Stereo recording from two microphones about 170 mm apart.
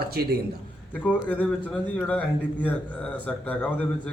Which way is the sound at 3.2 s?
10° left (ahead or behind).